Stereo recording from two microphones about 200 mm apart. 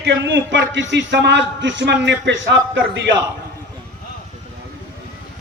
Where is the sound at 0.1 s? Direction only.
65° right (ahead or behind).